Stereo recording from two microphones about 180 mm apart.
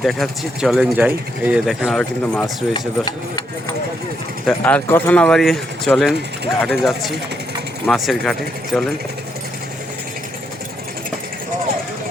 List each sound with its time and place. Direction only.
0.0 s speech: centre (ahead or behind)
2.7 s speech: 20° left (ahead or behind)
4.4 s speech: 10° left (ahead or behind)